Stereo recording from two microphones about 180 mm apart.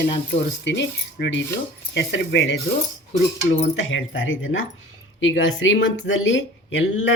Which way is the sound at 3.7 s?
90° left.